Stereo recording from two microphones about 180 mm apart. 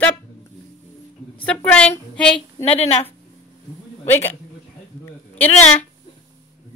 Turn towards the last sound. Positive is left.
turn(degrees=10)  # may be behind; listen again after turning